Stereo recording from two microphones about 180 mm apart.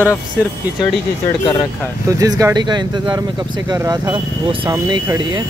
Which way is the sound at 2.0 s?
20° right (ahead or behind).